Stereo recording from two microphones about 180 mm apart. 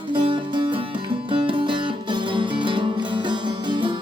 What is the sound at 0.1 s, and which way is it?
Music, 25° right (ahead or behind).